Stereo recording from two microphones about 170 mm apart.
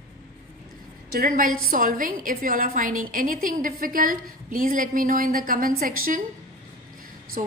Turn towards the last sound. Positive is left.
turn(degrees=-50)  # may be behind; listen again after turning